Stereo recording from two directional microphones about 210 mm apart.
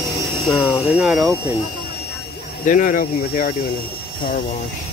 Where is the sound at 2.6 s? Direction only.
40° left (ahead or behind).